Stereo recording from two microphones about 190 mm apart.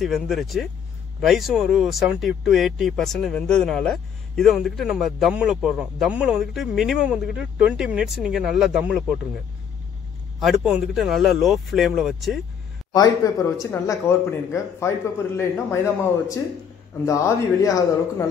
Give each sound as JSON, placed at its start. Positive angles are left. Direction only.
{"t": 0.0, "sound": "speech", "side_deg": 0}
{"t": 10.4, "sound": "speech", "side_deg": -5}
{"t": 12.9, "sound": "speech", "side_deg": 20}